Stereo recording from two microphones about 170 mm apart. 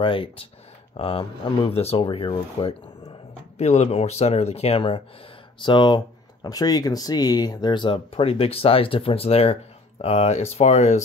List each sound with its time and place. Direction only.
0.0 s speech: 30° left (ahead or behind)